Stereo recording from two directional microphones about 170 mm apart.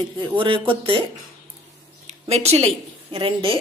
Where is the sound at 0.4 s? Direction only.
30° right (ahead or behind).